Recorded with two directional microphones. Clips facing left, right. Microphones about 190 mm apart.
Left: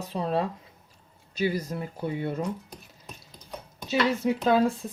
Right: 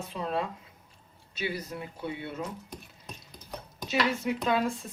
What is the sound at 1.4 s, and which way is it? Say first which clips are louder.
Speech: left 7 dB; 45° left (ahead or behind).